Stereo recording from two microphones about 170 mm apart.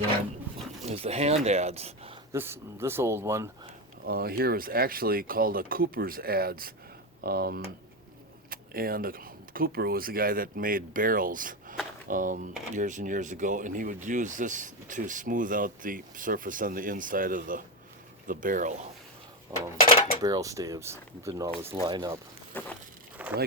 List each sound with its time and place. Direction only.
0.9 s speech: 40° right (ahead or behind)
2.3 s speech: 15° right (ahead or behind)
4.0 s speech: 65° right (ahead or behind); by 18.9 s 45° right (ahead or behind)
19.5 s speech: 25° right (ahead or behind)
22.5 s vehicle: 10° left (ahead or behind)
23.1 s a sound: 10° right (ahead or behind)